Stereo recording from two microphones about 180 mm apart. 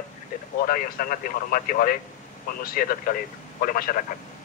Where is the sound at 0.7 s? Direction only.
50° left (ahead or behind).